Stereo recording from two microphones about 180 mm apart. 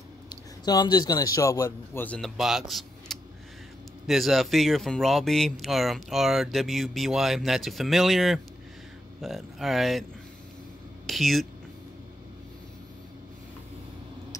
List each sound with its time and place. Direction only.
0.7 s a man's voice: 20° left (ahead or behind); by 2.6 s centre (ahead or behind)
3.1 s a sound: centre (ahead or behind)
4.1 s speech: centre (ahead or behind)
11.1 s speech: centre (ahead or behind)